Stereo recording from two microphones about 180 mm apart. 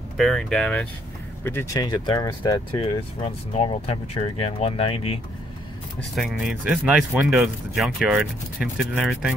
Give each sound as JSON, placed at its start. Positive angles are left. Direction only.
{"t": 0.2, "sound": "speech", "side_deg": 0}
{"t": 2.8, "sound": "speech", "side_deg": 35}
{"t": 5.9, "sound": "speech", "side_deg": 0}